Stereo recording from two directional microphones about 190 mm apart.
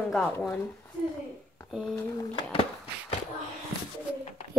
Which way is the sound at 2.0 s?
20° left (ahead or behind).